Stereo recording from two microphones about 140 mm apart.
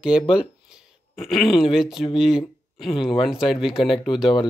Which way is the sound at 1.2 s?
Centre (ahead or behind).